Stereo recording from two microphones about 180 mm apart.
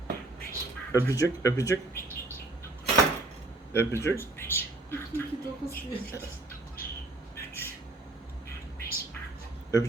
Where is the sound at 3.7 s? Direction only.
15° left (ahead or behind).